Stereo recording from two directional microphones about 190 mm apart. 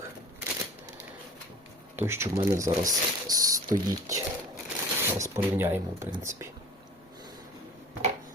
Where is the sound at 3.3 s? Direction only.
20° right (ahead or behind).